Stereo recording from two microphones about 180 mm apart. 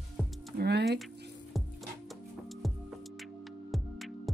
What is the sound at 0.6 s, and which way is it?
Speech, 70° right (ahead or behind).